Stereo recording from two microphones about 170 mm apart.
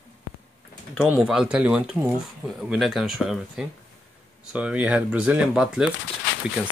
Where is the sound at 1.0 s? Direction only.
10° right (ahead or behind).